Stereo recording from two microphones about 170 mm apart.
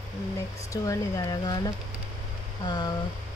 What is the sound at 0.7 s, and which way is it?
Speech, 20° left (ahead or behind).